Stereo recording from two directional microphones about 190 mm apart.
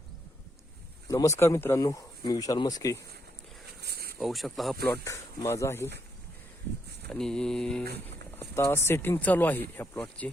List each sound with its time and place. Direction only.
1.0 s speech: 15° left (ahead or behind)
3.8 s a sound: 55° right (ahead or behind)
4.2 s mantra: centre (ahead or behind)
4.9 s speech: 15° left (ahead or behind)
7.1 s mantra: 5° left (ahead or behind)
8.4 s speech: 15° left (ahead or behind)